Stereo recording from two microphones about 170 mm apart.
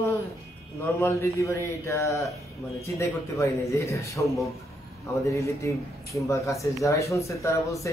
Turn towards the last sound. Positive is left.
turn(degrees=20)  # may be behind; listen again after turning